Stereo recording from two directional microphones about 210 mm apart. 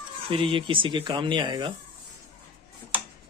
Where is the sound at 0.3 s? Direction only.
25° right (ahead or behind).